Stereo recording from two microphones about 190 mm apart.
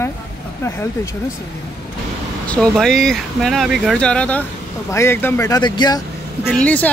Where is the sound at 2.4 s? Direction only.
5° left (ahead or behind).